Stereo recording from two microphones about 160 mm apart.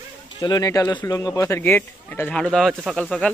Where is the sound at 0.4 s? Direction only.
25° left (ahead or behind); by 3.3 s 5° left (ahead or behind).